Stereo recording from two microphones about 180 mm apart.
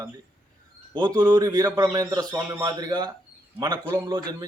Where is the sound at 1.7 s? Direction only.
10° right (ahead or behind).